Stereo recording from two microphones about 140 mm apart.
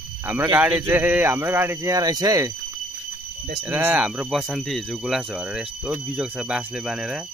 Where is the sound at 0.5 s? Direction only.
15° right (ahead or behind).